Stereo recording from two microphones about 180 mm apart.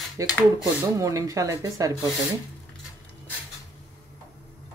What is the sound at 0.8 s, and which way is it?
Speech, 15° right (ahead or behind).